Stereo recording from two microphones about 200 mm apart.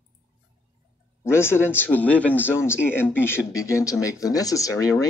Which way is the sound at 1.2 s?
10° left (ahead or behind).